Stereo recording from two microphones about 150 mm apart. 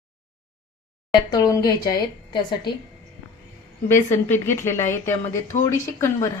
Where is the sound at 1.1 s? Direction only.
30° left (ahead or behind).